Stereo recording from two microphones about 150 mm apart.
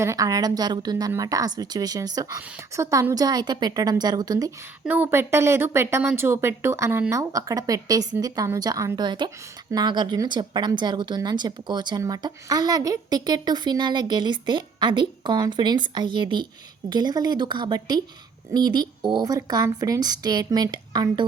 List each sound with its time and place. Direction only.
0.0 s speech: 20° right (ahead or behind)
4.9 s a woman's voice: 15° right (ahead or behind)